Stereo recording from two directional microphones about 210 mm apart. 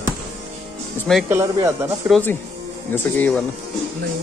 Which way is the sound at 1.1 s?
10° right (ahead or behind).